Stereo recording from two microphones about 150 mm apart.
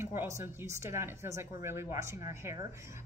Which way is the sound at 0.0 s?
15° right (ahead or behind).